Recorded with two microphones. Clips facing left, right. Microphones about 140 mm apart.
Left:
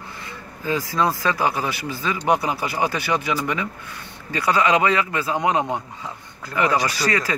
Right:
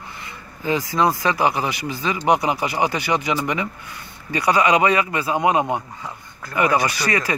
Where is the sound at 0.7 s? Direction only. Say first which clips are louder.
Right 2 dB; 15° right (ahead or behind).